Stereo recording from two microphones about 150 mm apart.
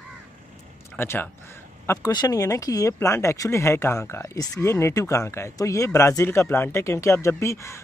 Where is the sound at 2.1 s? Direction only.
25° left (ahead or behind).